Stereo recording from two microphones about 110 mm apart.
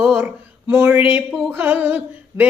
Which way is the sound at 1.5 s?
20° right (ahead or behind).